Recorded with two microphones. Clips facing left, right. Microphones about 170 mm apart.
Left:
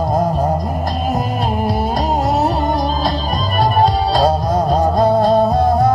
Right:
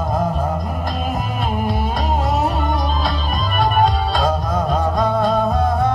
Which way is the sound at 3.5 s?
35° left (ahead or behind).